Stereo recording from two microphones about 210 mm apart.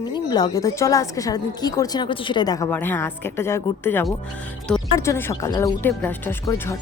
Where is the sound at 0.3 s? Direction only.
20° left (ahead or behind).